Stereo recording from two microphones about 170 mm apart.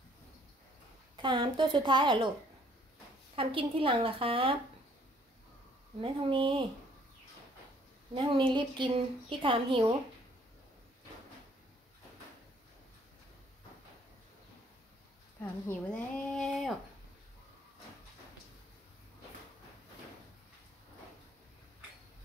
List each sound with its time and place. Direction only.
1.1 s a woman's voice: 30° right (ahead or behind)
3.3 s a woman's voice: 30° right (ahead or behind)
5.9 s a woman's voice: 30° right (ahead or behind)
8.1 s a woman's voice: 30° right (ahead or behind)
15.7 s speech: 5° left (ahead or behind)